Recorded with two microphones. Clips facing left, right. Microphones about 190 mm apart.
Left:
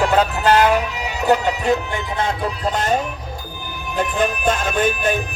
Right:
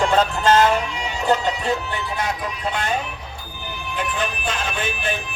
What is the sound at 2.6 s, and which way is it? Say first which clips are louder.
Speech: left 4 dB; 40° left (ahead or behind).